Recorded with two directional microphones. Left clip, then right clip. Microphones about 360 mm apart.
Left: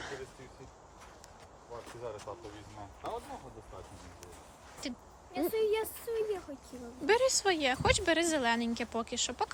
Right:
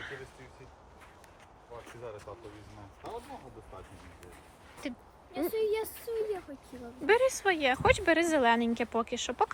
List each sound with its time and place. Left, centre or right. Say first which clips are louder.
1.9 s a sound: left 2 dB; left
3.0 s speech: left 2 dB; centre
4.8 s speech: right 1 dB; centre